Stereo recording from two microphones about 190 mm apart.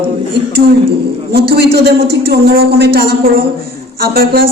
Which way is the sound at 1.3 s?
55° right (ahead or behind).